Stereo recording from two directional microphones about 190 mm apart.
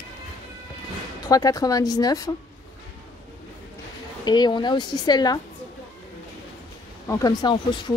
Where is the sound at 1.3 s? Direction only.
20° left (ahead or behind).